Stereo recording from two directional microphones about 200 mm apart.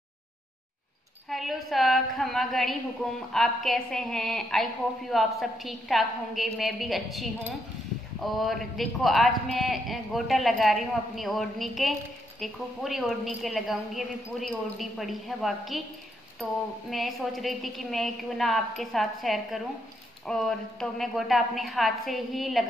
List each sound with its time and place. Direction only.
1.3 s a woman's voice: centre (ahead or behind)
16.9 s a woman's voice: centre (ahead or behind)